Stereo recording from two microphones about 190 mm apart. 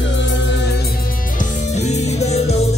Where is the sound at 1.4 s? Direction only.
35° left (ahead or behind).